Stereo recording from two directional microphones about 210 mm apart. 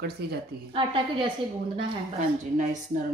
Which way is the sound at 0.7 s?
25° right (ahead or behind).